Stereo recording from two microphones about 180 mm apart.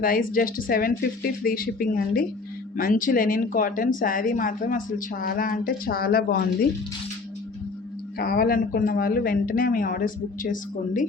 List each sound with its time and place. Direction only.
0.0 s speech: 50° left (ahead or behind)
8.2 s speech: 55° left (ahead or behind)